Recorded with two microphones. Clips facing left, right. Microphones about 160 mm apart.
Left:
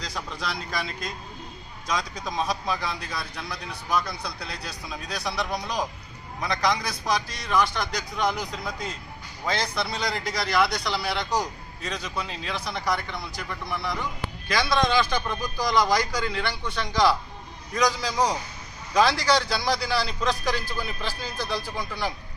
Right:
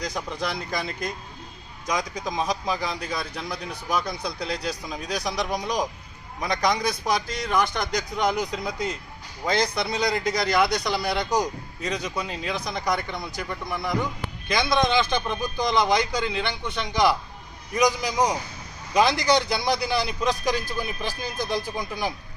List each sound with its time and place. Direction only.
0.0 s a man's voice: 20° right (ahead or behind)